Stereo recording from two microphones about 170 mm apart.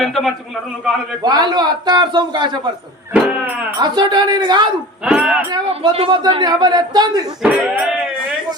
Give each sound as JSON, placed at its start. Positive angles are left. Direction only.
{"t": 0.0, "sound": "a man's voice", "side_deg": 0}
{"t": 1.2, "sound": "a man's voice", "side_deg": -25}
{"t": 3.1, "sound": "speech", "side_deg": -10}
{"t": 3.8, "sound": "a man's voice", "side_deg": -25}
{"t": 5.0, "sound": "speech", "side_deg": -10}
{"t": 5.5, "sound": "a man's voice", "side_deg": -25}
{"t": 7.4, "sound": "speech", "side_deg": -10}